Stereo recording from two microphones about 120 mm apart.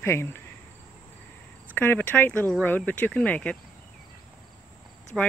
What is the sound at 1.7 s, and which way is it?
Speech, 15° left (ahead or behind).